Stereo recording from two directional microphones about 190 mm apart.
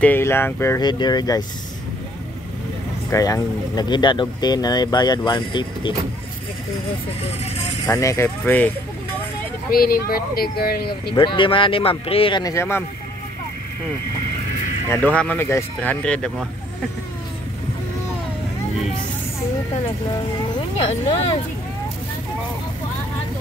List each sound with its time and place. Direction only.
0.0 s speech: 10° left (ahead or behind)
3.1 s speech: 15° left (ahead or behind)
7.8 s speech: 15° left (ahead or behind)
9.7 s speech: 50° left (ahead or behind)
11.1 s speech: 25° left (ahead or behind)
14.9 s speech: 10° left (ahead or behind)